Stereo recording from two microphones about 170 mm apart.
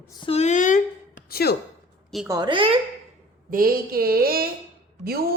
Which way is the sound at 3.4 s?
60° right (ahead or behind).